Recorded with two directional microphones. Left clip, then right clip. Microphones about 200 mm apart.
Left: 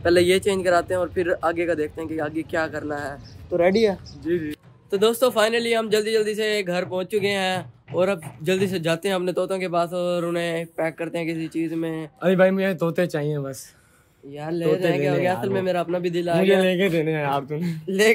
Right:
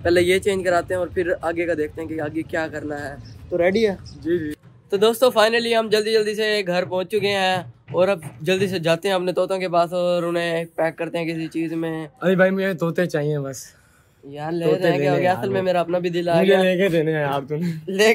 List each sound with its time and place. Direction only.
0.0 s a man's voice: 10° left (ahead or behind)
4.3 s a sound: 5° right (ahead or behind)
5.0 s a man's voice: 10° left (ahead or behind)
12.2 s speech: 25° left (ahead or behind); by 16.4 s 5° left (ahead or behind)
16.4 s speech: 25° left (ahead or behind)